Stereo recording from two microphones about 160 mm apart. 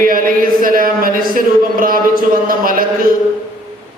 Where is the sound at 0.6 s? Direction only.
60° right (ahead or behind).